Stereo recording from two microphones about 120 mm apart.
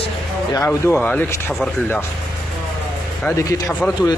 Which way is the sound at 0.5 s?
25° left (ahead or behind).